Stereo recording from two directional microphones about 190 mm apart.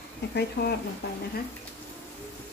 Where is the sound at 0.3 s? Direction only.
55° left (ahead or behind).